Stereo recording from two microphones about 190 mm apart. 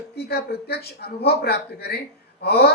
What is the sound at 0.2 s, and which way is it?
Speech, 55° left (ahead or behind).